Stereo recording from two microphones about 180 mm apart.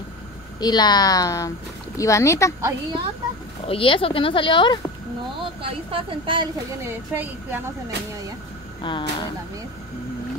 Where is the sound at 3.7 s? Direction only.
30° left (ahead or behind).